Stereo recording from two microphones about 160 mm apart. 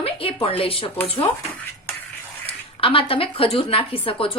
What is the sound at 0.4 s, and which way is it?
Speech, 35° left (ahead or behind).